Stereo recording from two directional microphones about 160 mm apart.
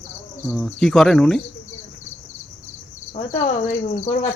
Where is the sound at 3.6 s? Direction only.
55° left (ahead or behind).